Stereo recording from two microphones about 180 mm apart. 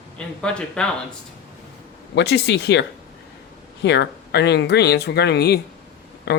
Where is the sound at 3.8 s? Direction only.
70° left (ahead or behind).